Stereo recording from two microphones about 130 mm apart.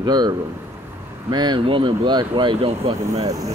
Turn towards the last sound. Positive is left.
turn(degrees=-25)  # may be behind; listen again after turning